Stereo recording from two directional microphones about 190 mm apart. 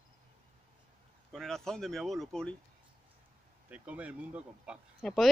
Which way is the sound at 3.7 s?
5° right (ahead or behind).